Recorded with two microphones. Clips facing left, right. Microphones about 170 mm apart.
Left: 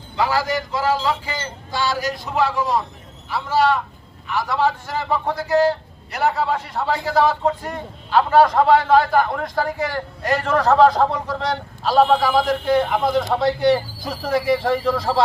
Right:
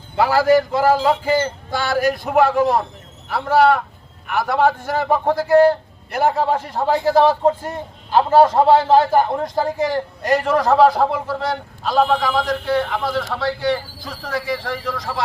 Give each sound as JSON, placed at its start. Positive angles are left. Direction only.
{"t": 0.2, "sound": "a man's voice", "side_deg": -55}
{"t": 7.7, "sound": "a man's voice", "side_deg": -25}